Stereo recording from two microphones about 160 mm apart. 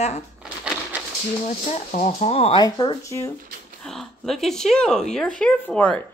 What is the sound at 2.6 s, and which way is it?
Speech, 25° left (ahead or behind).